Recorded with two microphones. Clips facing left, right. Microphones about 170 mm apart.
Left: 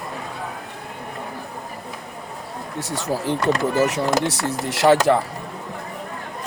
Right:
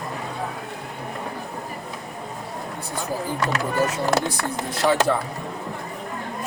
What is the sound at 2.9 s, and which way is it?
Speech, 80° left.